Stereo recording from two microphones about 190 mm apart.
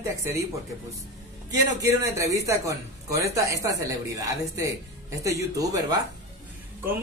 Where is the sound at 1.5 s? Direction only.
20° right (ahead or behind).